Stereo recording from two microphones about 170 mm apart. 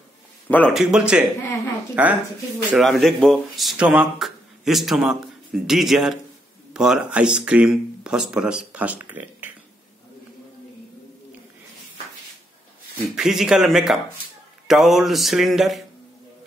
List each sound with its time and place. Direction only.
0.5 s speech: 10° left (ahead or behind)
0.7 s speech: 5° right (ahead or behind)
13.1 s speech: 5° right (ahead or behind)